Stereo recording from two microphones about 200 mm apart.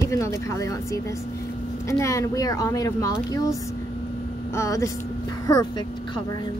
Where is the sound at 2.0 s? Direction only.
15° left (ahead or behind).